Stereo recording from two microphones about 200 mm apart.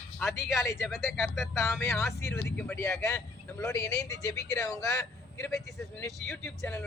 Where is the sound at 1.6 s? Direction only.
15° left (ahead or behind).